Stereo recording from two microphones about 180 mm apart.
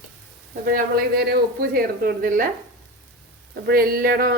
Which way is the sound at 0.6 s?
55° right (ahead or behind).